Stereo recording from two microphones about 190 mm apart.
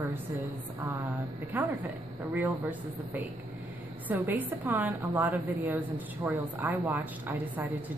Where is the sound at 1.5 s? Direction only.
10° right (ahead or behind).